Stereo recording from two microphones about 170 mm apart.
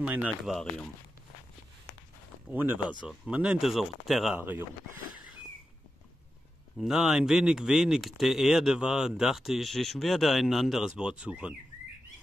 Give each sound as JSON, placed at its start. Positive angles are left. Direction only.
{"t": 0.0, "sound": "speech", "side_deg": -10}
{"t": 2.5, "sound": "speech", "side_deg": -10}
{"t": 4.4, "sound": "speech", "side_deg": -10}
{"t": 6.8, "sound": "speech", "side_deg": 0}